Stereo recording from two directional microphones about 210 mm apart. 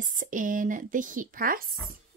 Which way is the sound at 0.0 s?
40° right (ahead or behind).